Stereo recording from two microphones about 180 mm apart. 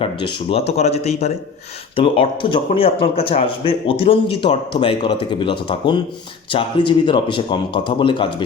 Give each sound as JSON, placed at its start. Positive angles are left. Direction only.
{"t": 0.0, "sound": "speech", "side_deg": 30}